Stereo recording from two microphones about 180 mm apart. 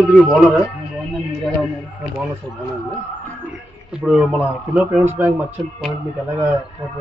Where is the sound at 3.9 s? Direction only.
5° right (ahead or behind).